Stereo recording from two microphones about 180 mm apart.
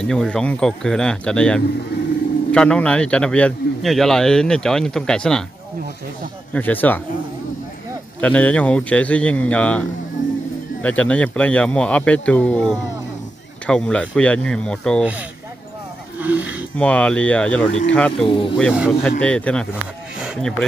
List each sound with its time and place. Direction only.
0.0 s a man's voice: 5° left (ahead or behind)
6.5 s speech: 10° left (ahead or behind)
8.2 s a man's voice: 10° left (ahead or behind)
16.2 s a sound: 10° right (ahead or behind)
16.7 s speech: 5° left (ahead or behind)
18.2 s speech: 30° left (ahead or behind)
18.7 s a man's voice: 5° right (ahead or behind)
19.0 s speech: 5° left (ahead or behind)
19.7 s a sound: 5° right (ahead or behind)